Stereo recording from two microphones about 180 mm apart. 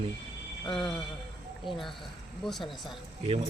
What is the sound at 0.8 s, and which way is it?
Speech, centre (ahead or behind).